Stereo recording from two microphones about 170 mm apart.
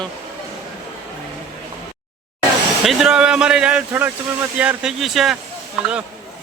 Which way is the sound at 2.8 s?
5° right (ahead or behind).